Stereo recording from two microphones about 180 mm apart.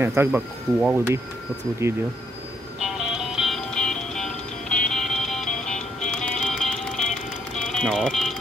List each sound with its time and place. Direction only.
0.0 s speech: 10° right (ahead or behind)
2.8 s music: centre (ahead or behind)